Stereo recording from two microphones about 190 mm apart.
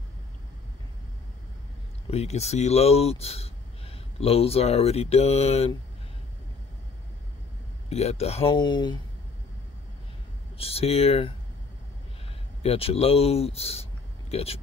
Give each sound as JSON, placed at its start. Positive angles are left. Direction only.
{"t": 2.0, "sound": "speech", "side_deg": 35}
{"t": 7.9, "sound": "speech", "side_deg": 35}
{"t": 10.6, "sound": "speech", "side_deg": 30}
{"t": 12.6, "sound": "speech", "side_deg": 30}